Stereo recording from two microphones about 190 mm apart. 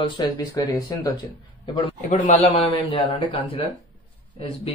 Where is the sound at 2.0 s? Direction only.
35° left (ahead or behind).